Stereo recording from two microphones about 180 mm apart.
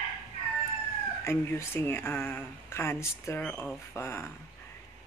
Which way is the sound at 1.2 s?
15° left (ahead or behind).